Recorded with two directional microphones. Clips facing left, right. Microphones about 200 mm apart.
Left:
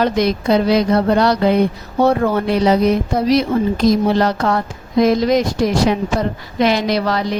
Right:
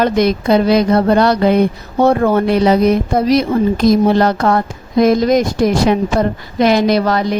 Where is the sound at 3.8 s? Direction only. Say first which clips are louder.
Right 3 dB; 50° right (ahead or behind).